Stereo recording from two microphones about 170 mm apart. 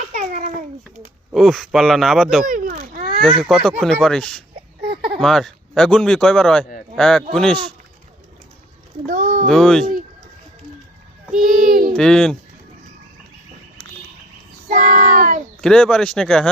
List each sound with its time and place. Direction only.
0.1 s babbling: 50° right (ahead or behind)
1.3 s a man's voice: centre (ahead or behind)
2.5 s a sound: 55° right (ahead or behind)
3.2 s a man's voice: centre (ahead or behind)
9.0 s a sound: 50° right (ahead or behind)
9.5 s a man's voice: 5° left (ahead or behind)
11.3 s a sound: 55° right (ahead or behind)
11.9 s a man's voice: 5° left (ahead or behind)
14.7 s child singing: 50° right (ahead or behind)
15.6 s a man's voice: 5° left (ahead or behind)